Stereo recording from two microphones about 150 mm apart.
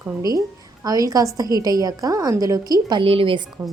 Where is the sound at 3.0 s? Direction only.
40° right (ahead or behind).